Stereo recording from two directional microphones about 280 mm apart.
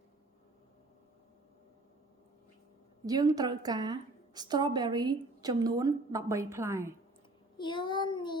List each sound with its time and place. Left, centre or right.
3.1 s a woman's voice: centre
7.6 s child singing: centre